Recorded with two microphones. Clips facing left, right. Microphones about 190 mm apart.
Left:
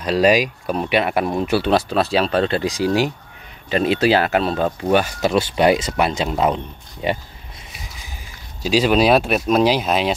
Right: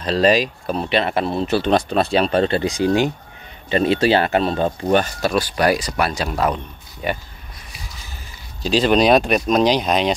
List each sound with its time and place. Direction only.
0.0 s speech: 10° left (ahead or behind)
5.3 s speech: 20° left (ahead or behind)
8.6 s speech: 5° left (ahead or behind)